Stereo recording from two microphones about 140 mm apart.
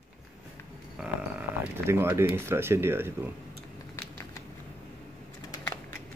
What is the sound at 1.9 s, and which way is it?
Speech, 20° right (ahead or behind).